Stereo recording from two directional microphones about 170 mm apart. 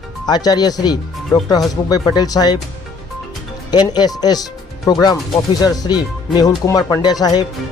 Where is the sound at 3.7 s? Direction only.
25° left (ahead or behind).